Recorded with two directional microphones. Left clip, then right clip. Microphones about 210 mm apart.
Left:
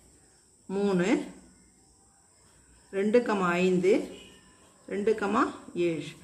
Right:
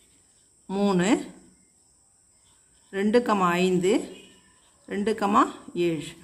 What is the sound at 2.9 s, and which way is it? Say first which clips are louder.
Speech: right 2 dB; 40° right (ahead or behind).